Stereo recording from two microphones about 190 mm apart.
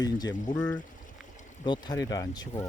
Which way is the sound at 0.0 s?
20° left (ahead or behind).